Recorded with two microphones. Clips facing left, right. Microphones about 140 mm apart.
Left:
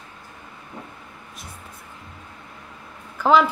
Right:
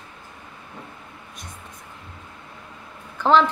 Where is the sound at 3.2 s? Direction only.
5° left (ahead or behind).